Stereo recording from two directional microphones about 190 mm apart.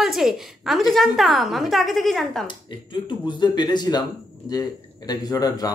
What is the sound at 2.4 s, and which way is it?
Speech, 25° left (ahead or behind).